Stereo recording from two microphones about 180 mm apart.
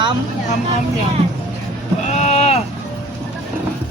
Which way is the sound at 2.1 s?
40° left (ahead or behind).